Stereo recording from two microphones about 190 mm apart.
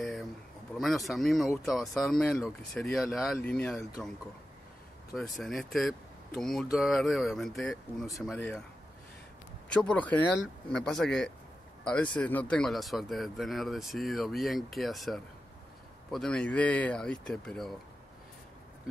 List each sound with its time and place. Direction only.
0.0 s a sound: centre (ahead or behind)
0.7 s speech: centre (ahead or behind)
5.1 s speech: centre (ahead or behind)
9.8 s a man's voice: 5° left (ahead or behind)